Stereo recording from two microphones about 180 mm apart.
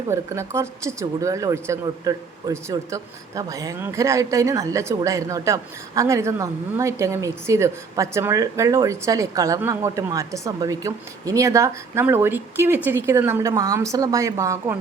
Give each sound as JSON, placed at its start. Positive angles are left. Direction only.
{"t": 0.1, "sound": "speech", "side_deg": -15}